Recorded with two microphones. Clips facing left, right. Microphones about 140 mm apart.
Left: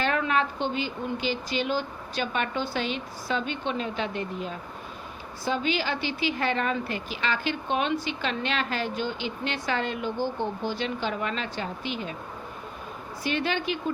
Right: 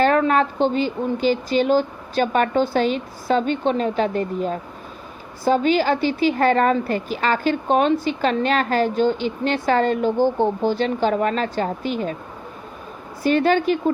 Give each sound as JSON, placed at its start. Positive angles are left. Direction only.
{"t": 0.0, "sound": "a woman's voice", "side_deg": -40}
{"t": 13.2, "sound": "speech", "side_deg": -45}